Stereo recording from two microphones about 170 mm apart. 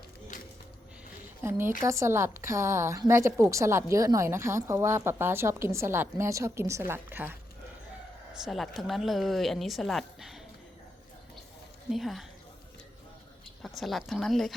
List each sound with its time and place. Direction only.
1.4 s a woman's voice: 15° right (ahead or behind)
8.4 s speech: centre (ahead or behind)
11.9 s speech: centre (ahead or behind)
13.6 s speech: centre (ahead or behind)